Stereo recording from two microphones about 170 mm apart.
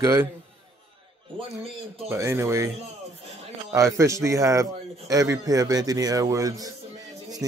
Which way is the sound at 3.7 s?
15° right (ahead or behind).